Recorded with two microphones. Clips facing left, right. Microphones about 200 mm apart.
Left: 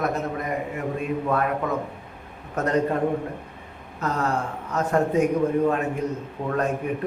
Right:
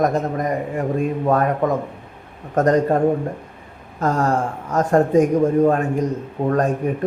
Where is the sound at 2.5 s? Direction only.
40° right (ahead or behind).